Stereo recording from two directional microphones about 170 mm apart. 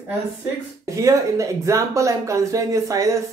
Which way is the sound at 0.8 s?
20° right (ahead or behind).